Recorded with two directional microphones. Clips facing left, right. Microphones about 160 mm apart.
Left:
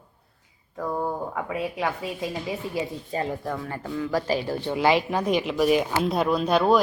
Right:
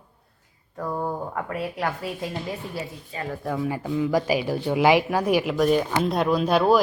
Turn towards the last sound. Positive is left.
turn(degrees=0)  # may be behind; listen again after turning